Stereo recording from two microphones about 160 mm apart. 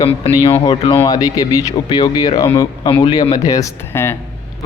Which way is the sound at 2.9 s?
35° left (ahead or behind).